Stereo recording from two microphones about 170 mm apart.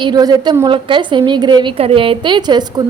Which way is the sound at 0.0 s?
25° right (ahead or behind).